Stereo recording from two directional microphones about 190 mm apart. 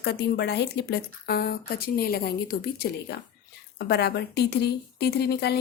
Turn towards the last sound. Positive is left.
turn(degrees=60)  # may be behind; listen again after turning